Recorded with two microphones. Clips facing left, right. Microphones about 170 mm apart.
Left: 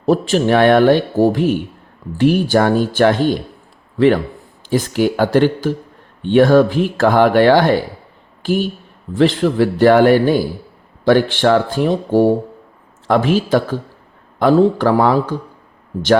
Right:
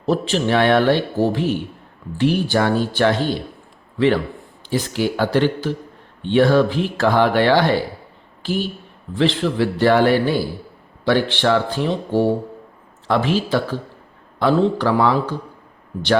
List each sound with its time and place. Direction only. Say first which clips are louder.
0.0 s a man's voice: left 5 dB; 45° left (ahead or behind)
9.1 s speech: left 5 dB; 45° left (ahead or behind)